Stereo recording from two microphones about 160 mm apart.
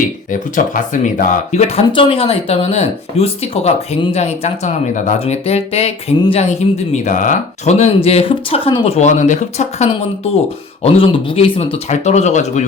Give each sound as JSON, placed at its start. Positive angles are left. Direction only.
{"t": 0.3, "sound": "speech", "side_deg": 55}